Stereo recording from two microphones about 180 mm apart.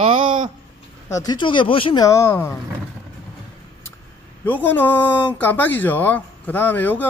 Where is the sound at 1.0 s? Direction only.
20° left (ahead or behind).